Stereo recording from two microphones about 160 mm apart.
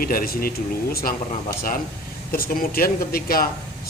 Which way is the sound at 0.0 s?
65° left (ahead or behind).